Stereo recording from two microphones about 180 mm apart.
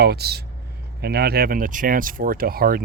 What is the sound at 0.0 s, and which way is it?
Speech, 65° right (ahead or behind).